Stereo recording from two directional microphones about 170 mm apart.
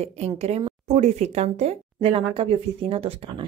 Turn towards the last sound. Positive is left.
turn(degrees=-35)  # may be behind; listen again after turning